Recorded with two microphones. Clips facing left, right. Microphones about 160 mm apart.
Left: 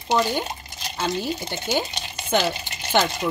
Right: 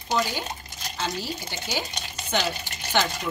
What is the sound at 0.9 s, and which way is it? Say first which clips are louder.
Speech: left 5 dB; 55° left (ahead or behind).